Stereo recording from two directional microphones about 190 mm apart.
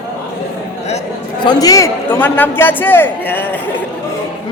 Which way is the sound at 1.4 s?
20° left (ahead or behind).